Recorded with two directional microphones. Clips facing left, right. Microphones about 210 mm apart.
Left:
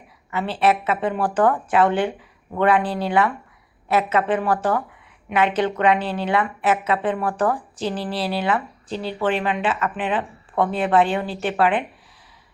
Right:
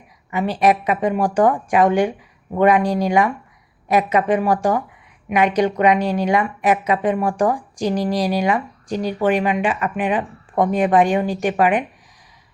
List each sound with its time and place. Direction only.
0.3 s a woman's voice: 15° right (ahead or behind)